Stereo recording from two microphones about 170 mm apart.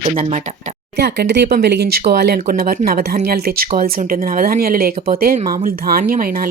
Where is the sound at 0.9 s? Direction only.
75° right (ahead or behind).